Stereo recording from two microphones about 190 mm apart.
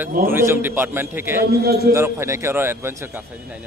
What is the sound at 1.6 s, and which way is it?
Speech, 55° right (ahead or behind).